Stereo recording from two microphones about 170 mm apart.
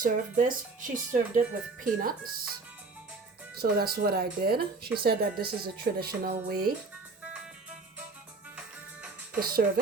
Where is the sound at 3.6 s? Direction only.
65° right (ahead or behind).